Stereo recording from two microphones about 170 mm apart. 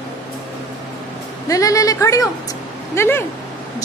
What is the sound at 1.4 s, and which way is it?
A woman's voice, 20° left (ahead or behind).